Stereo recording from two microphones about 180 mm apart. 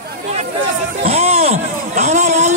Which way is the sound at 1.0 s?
35° right (ahead or behind).